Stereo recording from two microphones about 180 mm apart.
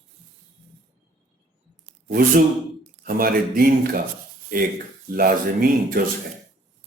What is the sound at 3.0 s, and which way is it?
Speech, 55° right (ahead or behind).